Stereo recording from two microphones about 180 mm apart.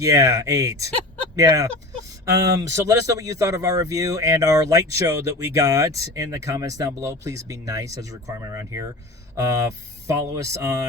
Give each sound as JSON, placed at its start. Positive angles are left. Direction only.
{"t": 0.0, "sound": "speech", "side_deg": -20}